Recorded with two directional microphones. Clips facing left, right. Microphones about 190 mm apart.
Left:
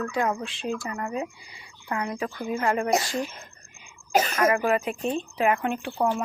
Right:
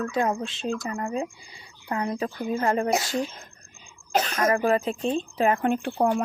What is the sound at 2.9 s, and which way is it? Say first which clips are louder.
A woman's voice: even; centre (ahead or behind).